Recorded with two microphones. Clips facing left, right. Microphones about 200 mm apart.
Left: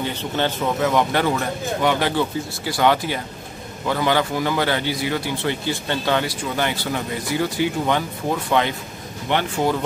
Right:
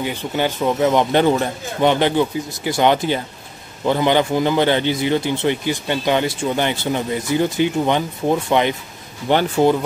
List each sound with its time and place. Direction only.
0.0 s a man's voice: 10° right (ahead or behind)
0.7 s a man's voice: 20° right (ahead or behind)
9.3 s speech: 35° right (ahead or behind)